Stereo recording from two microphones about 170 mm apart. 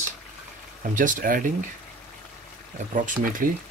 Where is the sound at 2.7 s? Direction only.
50° right (ahead or behind).